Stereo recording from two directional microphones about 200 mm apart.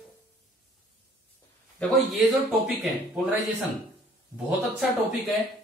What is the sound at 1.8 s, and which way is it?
Speech, 5° left (ahead or behind).